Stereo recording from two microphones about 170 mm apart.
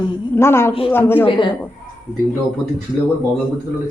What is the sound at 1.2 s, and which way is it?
Speech, 30° left (ahead or behind).